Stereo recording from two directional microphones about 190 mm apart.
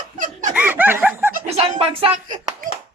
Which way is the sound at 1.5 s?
30° right (ahead or behind).